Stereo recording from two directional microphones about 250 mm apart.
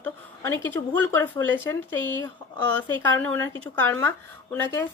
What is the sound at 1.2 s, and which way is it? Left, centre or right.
Speech, centre.